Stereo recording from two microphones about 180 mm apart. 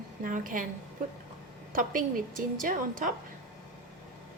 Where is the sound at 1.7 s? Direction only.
50° right (ahead or behind).